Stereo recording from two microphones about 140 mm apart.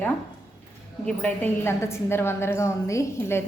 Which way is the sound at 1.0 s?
10° left (ahead or behind).